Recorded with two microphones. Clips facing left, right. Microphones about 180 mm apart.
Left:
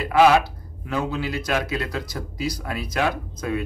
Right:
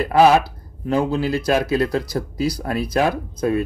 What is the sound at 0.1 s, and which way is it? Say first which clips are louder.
A man's voice: right 2 dB; 35° right (ahead or behind).